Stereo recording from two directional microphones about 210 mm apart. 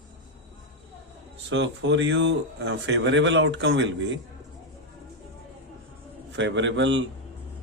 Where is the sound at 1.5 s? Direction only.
60° right (ahead or behind).